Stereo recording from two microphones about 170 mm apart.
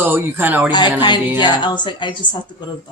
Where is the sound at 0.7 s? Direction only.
25° left (ahead or behind).